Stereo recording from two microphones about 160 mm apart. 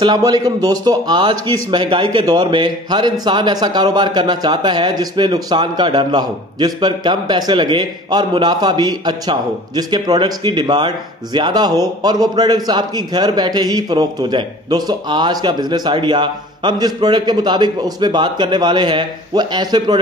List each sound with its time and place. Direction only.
0.0 s a man's voice: 25° right (ahead or behind)